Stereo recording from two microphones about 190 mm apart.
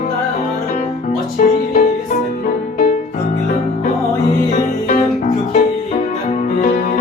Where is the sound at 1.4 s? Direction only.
45° left (ahead or behind).